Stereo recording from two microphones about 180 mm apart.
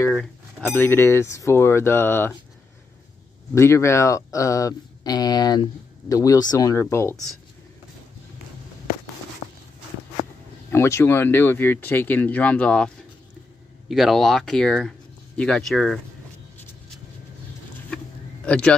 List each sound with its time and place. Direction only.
0.1 s speech: 5° left (ahead or behind)
3.5 s speech: 15° left (ahead or behind)
10.7 s speech: 15° left (ahead or behind)
17.8 s a sound: 5° left (ahead or behind)